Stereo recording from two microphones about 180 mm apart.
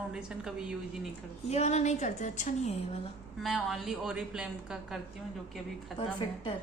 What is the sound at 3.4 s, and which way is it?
A woman's voice, centre (ahead or behind).